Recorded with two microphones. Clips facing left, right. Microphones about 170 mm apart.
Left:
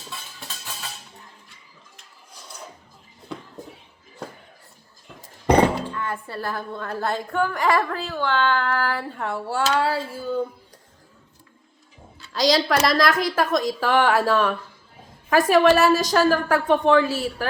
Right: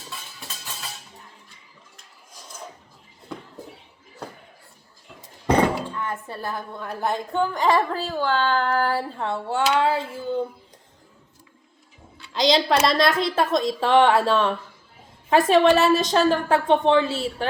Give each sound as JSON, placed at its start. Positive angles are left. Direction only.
{"t": 0.1, "sound": "music", "side_deg": -5}
{"t": 6.0, "sound": "a woman's voice", "side_deg": -20}
{"t": 8.1, "sound": "a sound", "side_deg": -40}
{"t": 9.1, "sound": "a woman's voice", "side_deg": -25}
{"t": 12.3, "sound": "a woman's voice", "side_deg": -20}